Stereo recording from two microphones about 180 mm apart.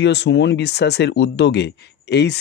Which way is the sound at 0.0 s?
75° left (ahead or behind).